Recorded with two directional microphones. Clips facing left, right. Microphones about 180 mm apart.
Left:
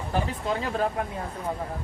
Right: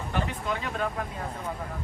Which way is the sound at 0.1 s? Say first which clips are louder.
Left 3 dB; 35° left (ahead or behind).